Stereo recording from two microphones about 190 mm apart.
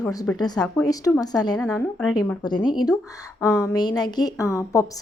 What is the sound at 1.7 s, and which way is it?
Speech, 5° left (ahead or behind).